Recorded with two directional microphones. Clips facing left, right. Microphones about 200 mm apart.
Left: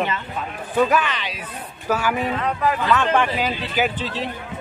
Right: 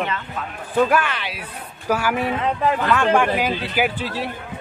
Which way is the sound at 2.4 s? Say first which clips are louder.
Right 2 dB; 25° right (ahead or behind).